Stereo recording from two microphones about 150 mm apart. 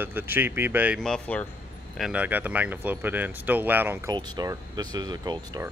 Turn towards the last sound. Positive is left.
turn(degrees=-25)  # may be behind; listen again after turning